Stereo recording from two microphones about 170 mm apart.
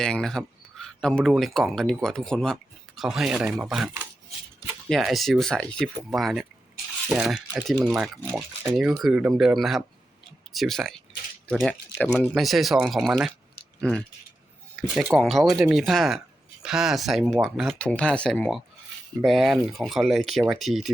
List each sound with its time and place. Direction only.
0.0 s speech: 5° left (ahead or behind)
8.2 s speech: 15° right (ahead or behind)
8.7 s speech: 5° right (ahead or behind)
14.9 s speech: centre (ahead or behind)